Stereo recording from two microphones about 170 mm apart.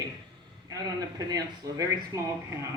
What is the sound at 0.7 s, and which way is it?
A woman's voice, 20° right (ahead or behind).